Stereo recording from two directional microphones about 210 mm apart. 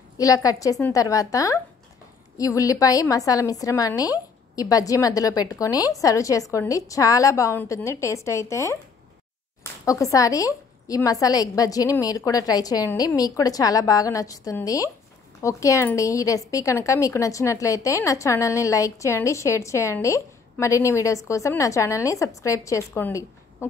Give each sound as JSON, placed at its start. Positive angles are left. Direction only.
{"t": 0.2, "sound": "a woman's voice", "side_deg": 15}